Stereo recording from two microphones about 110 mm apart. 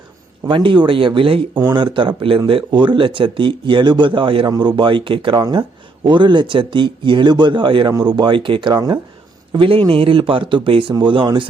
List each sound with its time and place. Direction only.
0.4 s speech: 50° right (ahead or behind)
4.4 s speech: 40° right (ahead or behind)
5.4 s speech: 40° right (ahead or behind)
9.5 s speech: 55° right (ahead or behind)